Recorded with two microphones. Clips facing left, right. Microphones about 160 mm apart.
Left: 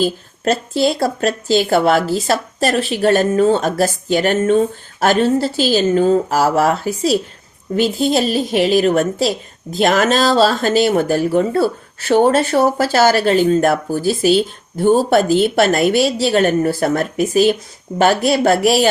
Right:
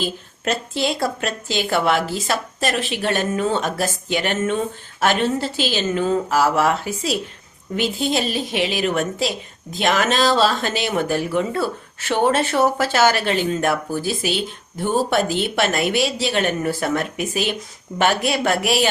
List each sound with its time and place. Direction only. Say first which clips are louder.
0.0 s speech: left 7 dB; 35° left (ahead or behind)